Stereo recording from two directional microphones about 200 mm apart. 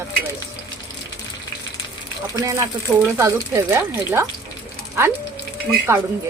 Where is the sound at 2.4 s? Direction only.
15° right (ahead or behind).